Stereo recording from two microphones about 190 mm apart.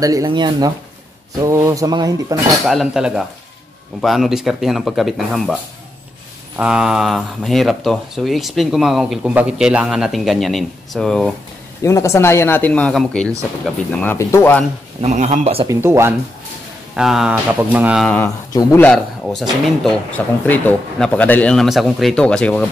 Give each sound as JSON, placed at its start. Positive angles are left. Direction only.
{"t": 0.0, "sound": "speech", "side_deg": -20}
{"t": 2.6, "sound": "speech", "side_deg": 0}
{"t": 11.8, "sound": "speech", "side_deg": 15}
{"t": 15.0, "sound": "speech", "side_deg": -35}
{"t": 15.7, "sound": "speech", "side_deg": -15}
{"t": 16.9, "sound": "speech", "side_deg": -5}
{"t": 18.0, "sound": "speech", "side_deg": 5}